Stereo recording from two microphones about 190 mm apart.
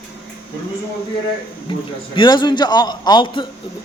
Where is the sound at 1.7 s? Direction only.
25° left (ahead or behind).